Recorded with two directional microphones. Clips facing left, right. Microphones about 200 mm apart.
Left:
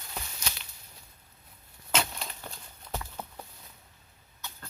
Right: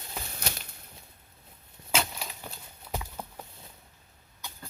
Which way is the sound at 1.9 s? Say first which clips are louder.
Even; 5° right (ahead or behind).